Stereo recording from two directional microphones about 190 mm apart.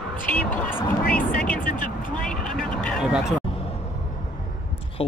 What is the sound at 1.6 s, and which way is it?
Speech, 45° left (ahead or behind).